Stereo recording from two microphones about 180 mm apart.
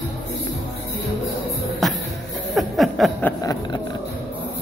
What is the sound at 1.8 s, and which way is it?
Music, centre (ahead or behind).